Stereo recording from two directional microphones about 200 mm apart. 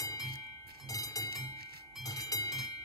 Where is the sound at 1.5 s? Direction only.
50° right (ahead or behind).